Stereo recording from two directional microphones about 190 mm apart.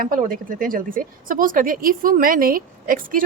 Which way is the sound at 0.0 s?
45° right (ahead or behind).